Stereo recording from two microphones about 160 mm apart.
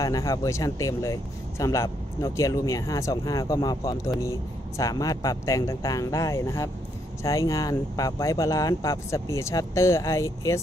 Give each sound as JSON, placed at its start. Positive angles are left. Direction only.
{"t": 0.0, "sound": "speech", "side_deg": 20}